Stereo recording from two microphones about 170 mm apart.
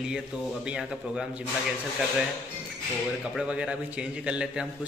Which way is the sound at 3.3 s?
5° right (ahead or behind).